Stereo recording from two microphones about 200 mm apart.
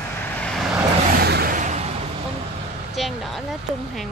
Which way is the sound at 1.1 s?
50° right (ahead or behind).